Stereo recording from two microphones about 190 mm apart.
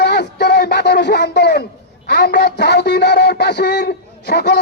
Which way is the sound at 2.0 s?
60° left (ahead or behind).